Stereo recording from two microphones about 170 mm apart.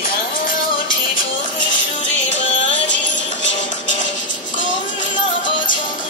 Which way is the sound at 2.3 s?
90° left.